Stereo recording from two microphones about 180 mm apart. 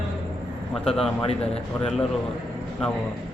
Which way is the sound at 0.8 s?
5° left (ahead or behind).